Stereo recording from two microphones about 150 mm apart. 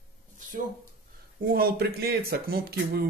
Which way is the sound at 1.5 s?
90° right.